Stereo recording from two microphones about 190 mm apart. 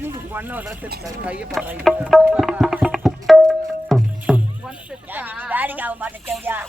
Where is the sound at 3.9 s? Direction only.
5° right (ahead or behind).